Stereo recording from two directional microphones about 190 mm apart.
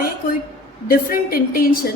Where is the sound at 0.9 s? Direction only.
50° left (ahead or behind).